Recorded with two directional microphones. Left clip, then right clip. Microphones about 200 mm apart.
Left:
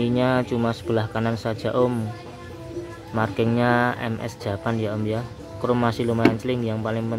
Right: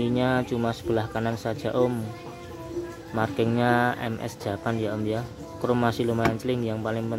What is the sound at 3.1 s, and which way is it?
A man's voice, 5° right (ahead or behind).